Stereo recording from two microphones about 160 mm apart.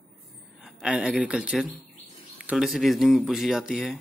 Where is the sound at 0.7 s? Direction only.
5° right (ahead or behind).